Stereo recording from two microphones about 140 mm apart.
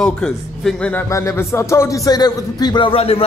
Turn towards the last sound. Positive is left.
turn(degrees=45)  # may be behind; listen again after turning